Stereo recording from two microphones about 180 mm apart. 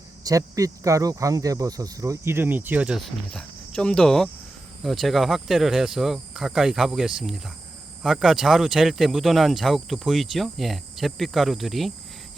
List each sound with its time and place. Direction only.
0.3 s speech: 20° right (ahead or behind); by 11.9 s centre (ahead or behind)